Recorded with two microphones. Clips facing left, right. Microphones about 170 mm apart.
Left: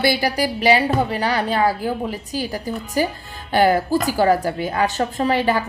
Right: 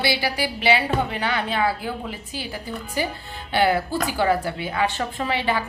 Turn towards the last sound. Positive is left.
turn(degrees=40)  # may be behind; listen again after turning